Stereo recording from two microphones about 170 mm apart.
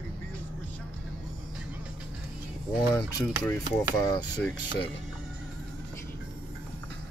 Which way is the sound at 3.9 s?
25° left (ahead or behind).